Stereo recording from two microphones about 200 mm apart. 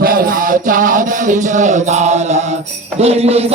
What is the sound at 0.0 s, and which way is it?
Speech, 45° right (ahead or behind).